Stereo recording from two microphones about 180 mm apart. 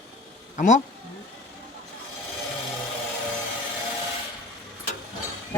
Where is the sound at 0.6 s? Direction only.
45° left (ahead or behind).